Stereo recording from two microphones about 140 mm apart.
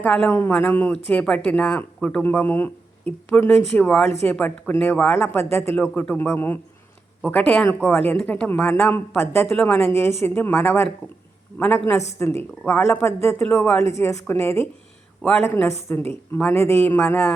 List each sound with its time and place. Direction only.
0.0 s speech: 10° left (ahead or behind)